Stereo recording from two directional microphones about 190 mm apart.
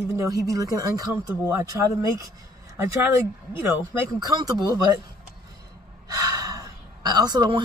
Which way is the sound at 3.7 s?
20° right (ahead or behind).